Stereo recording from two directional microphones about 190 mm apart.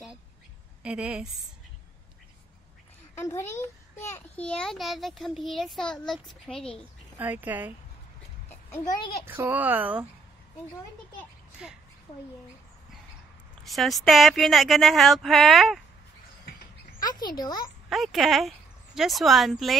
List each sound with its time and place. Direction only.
0.8 s a child's voice: 5° right (ahead or behind)
3.2 s a child's voice: 15° left (ahead or behind)
7.2 s speech: 10° right (ahead or behind)
8.7 s a child's voice: 20° left (ahead or behind)
9.2 s speech: 10° right (ahead or behind)
11.6 s a child's voice: 5° right (ahead or behind)
13.7 s a child's voice: centre (ahead or behind)
17.0 s a child's voice: 20° left (ahead or behind)
17.8 s a child's voice: centre (ahead or behind)